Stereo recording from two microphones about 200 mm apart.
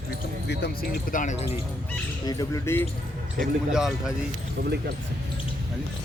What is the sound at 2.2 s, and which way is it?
Speech, 15° left (ahead or behind).